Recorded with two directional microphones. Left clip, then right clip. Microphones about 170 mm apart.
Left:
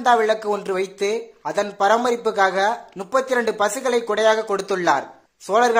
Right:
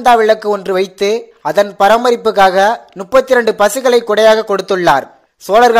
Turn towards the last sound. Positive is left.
turn(degrees=-30)  # may be behind; listen again after turning